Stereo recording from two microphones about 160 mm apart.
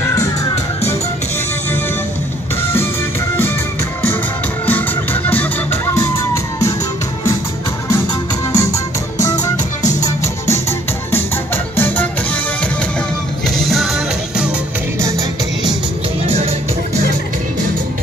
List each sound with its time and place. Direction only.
4.6 s music: 10° left (ahead or behind)
7.9 s music: 20° left (ahead or behind)
13.7 s music: centre (ahead or behind)
15.0 s music: 20° right (ahead or behind)
16.3 s music: 40° right (ahead or behind)